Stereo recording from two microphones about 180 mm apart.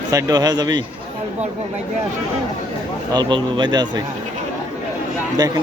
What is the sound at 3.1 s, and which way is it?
Speech, 25° right (ahead or behind).